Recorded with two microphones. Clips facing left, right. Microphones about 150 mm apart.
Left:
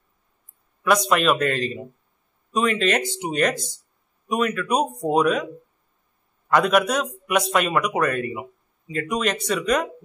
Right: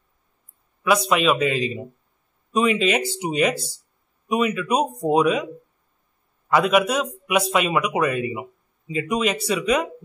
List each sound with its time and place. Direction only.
0.8 s speech: centre (ahead or behind)
6.5 s speech: 5° right (ahead or behind)